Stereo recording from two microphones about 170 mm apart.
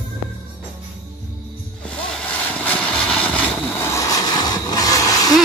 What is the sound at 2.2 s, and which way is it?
Vehicle, 10° left (ahead or behind).